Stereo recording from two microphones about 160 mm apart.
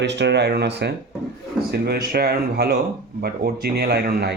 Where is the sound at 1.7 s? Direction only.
80° right.